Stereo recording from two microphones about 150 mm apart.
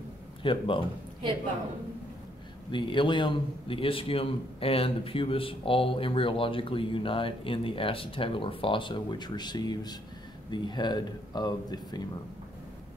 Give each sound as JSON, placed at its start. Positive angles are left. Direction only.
{"t": 0.4, "sound": "speech", "side_deg": 35}
{"t": 2.7, "sound": "a man's voice", "side_deg": 35}